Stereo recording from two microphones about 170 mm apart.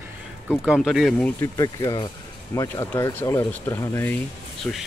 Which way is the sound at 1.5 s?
20° left (ahead or behind).